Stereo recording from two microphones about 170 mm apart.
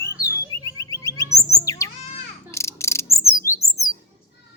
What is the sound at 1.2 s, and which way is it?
Bird, 80° left.